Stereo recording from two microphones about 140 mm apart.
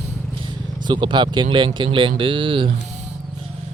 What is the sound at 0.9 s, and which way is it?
Speech, 30° right (ahead or behind).